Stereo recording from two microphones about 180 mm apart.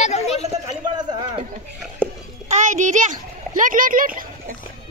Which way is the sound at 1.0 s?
25° right (ahead or behind).